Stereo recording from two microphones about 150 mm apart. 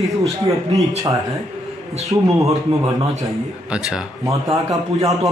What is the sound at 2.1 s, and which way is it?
Speech, 20° right (ahead or behind).